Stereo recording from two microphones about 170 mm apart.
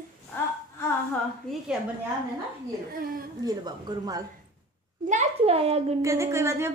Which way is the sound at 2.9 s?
60° right (ahead or behind).